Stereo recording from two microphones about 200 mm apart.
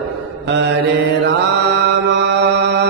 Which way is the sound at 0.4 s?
60° right (ahead or behind).